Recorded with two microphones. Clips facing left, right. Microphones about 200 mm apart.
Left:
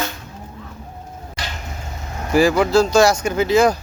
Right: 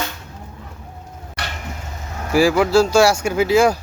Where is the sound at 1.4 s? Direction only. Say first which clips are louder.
Right 1 dB; 65° right (ahead or behind).